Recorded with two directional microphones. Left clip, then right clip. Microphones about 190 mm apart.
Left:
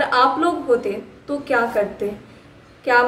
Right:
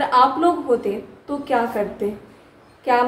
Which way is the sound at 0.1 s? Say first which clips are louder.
Right 3 dB; 10° left (ahead or behind).